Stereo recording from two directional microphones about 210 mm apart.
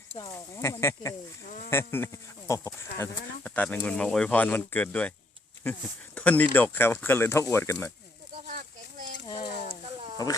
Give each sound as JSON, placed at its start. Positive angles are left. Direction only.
{"t": 0.1, "sound": "speech", "side_deg": 20}
{"t": 1.5, "sound": "speech", "side_deg": 40}
{"t": 1.7, "sound": "speech", "side_deg": 10}
{"t": 6.1, "sound": "speech", "side_deg": 5}
{"t": 8.4, "sound": "a sound", "side_deg": -40}
{"t": 9.2, "sound": "a sound", "side_deg": 20}
{"t": 10.2, "sound": "speech", "side_deg": 15}